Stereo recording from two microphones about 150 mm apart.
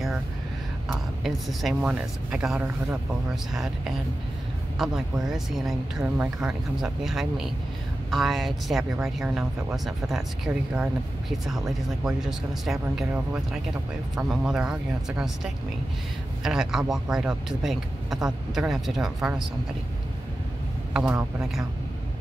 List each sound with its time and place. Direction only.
1.2 s speech: centre (ahead or behind)
20.9 s a man's voice: 5° right (ahead or behind)